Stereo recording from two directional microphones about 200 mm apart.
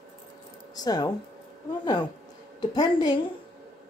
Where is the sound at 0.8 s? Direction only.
20° left (ahead or behind).